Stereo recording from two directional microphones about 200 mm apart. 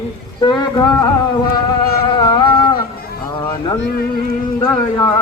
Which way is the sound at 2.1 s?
20° left (ahead or behind).